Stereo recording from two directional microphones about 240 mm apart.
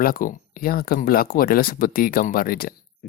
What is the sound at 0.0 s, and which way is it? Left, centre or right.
Speech, left.